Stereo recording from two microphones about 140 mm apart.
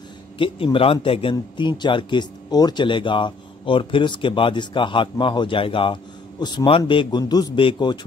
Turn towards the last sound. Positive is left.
turn(degrees=35)  # may be behind; listen again after turning